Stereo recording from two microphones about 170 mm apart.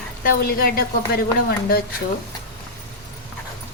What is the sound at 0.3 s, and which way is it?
A woman's voice, 60° left (ahead or behind).